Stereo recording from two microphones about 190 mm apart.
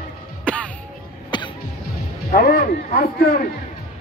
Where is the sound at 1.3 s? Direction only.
25° left (ahead or behind).